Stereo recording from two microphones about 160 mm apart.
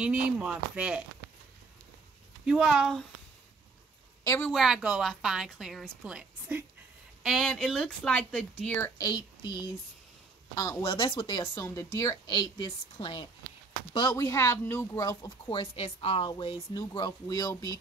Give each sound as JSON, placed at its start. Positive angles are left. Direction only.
{"t": 0.0, "sound": "speech", "side_deg": -10}
{"t": 2.4, "sound": "a woman's voice", "side_deg": 0}
{"t": 4.4, "sound": "a woman's voice", "side_deg": 0}
{"t": 8.9, "sound": "a woman's voice", "side_deg": 25}
{"t": 10.8, "sound": "a woman's voice", "side_deg": 35}
{"t": 11.5, "sound": "a woman's voice", "side_deg": 20}
{"t": 15.6, "sound": "a woman's voice", "side_deg": 35}